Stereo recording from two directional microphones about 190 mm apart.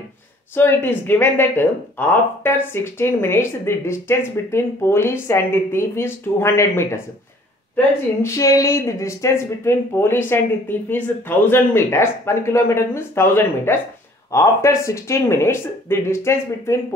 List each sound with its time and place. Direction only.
0.6 s speech: 10° left (ahead or behind)